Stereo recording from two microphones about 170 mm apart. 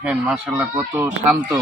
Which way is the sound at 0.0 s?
5° right (ahead or behind).